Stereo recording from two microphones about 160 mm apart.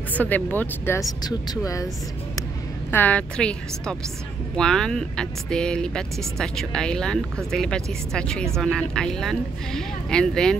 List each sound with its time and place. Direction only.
0.1 s speech: 10° left (ahead or behind)
2.9 s speech: 10° left (ahead or behind)